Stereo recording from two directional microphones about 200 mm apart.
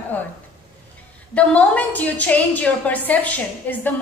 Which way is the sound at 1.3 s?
5° left (ahead or behind).